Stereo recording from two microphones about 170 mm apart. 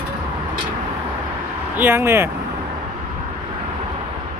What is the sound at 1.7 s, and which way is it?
Speech, 10° right (ahead or behind).